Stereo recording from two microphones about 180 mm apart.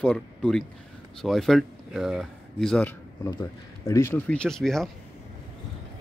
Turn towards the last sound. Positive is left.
turn(degrees=0)  # may be behind; listen again after turning